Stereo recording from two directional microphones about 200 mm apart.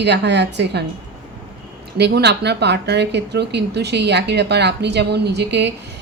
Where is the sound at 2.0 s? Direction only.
55° right (ahead or behind).